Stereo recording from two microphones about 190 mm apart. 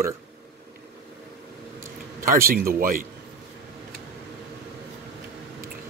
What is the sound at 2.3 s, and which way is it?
Speech, 50° right (ahead or behind).